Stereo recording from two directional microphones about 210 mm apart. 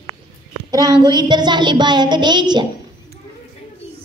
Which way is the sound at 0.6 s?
15° right (ahead or behind).